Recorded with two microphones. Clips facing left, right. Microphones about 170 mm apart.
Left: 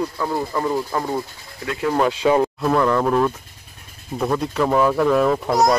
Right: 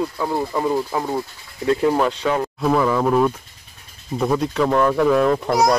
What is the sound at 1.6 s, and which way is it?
Speech, 30° right (ahead or behind).